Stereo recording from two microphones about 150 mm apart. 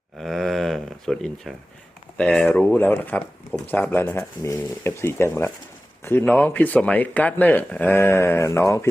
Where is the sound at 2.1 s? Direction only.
5° left (ahead or behind).